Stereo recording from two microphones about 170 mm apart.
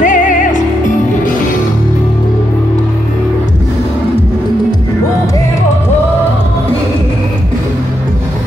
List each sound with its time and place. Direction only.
0.0 s music: 50° left (ahead or behind)